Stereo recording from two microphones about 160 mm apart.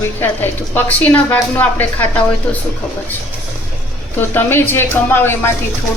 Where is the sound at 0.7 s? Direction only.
10° left (ahead or behind).